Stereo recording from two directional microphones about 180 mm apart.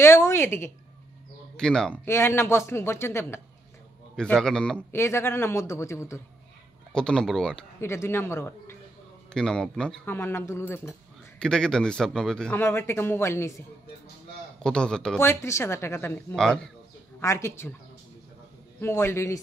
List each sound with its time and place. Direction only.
0.0 s speech: 15° left (ahead or behind)
4.2 s speech: 5° left (ahead or behind)
6.9 s speech: 5° left (ahead or behind)
7.8 s speech: 15° left (ahead or behind)
14.6 s speech: 5° left (ahead or behind)
17.2 s speech: 15° left (ahead or behind)
18.8 s speech: 15° left (ahead or behind)